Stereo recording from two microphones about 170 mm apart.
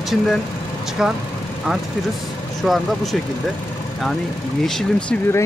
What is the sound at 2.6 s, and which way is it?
Speech, centre (ahead or behind).